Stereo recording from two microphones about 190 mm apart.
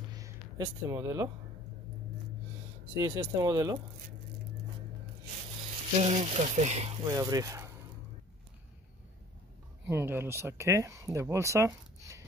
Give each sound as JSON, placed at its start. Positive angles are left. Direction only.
{"t": 0.1, "sound": "a sound", "side_deg": -20}
{"t": 3.0, "sound": "speech", "side_deg": -20}
{"t": 5.9, "sound": "speech", "side_deg": -35}
{"t": 7.1, "sound": "speech", "side_deg": -20}
{"t": 9.8, "sound": "speech", "side_deg": -15}